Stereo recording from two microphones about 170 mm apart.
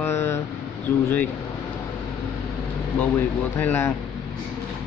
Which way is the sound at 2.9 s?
10° left (ahead or behind).